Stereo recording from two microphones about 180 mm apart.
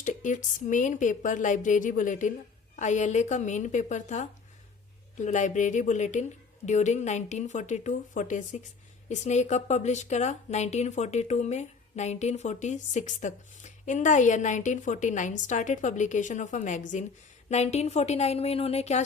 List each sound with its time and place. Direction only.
0.0 s speech: 45° left (ahead or behind)